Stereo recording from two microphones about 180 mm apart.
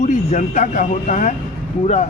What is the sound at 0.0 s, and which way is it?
Speech, 40° left (ahead or behind).